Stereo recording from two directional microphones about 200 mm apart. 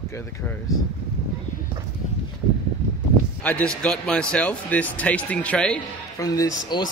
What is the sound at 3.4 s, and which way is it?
A man's voice, 5° left (ahead or behind).